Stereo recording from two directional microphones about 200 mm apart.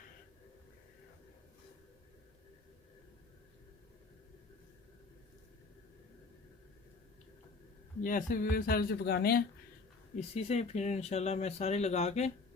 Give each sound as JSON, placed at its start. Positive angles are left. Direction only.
{"t": 8.0, "sound": "speech", "side_deg": 40}
{"t": 10.2, "sound": "speech", "side_deg": 30}